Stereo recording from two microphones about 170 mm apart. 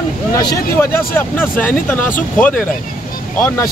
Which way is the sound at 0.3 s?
25° left (ahead or behind).